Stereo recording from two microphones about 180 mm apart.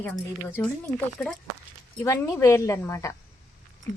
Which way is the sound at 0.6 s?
5° left (ahead or behind).